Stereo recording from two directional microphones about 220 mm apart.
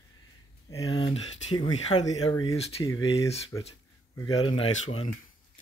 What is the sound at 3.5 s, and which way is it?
Speech, 15° left (ahead or behind).